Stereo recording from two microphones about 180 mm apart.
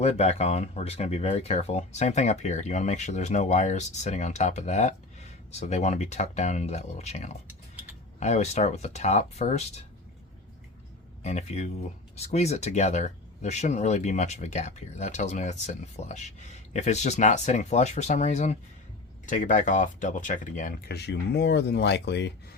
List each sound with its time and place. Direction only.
0.0 s speech: 35° left (ahead or behind)
11.2 s speech: 40° left (ahead or behind); by 22.3 s 70° left (ahead or behind)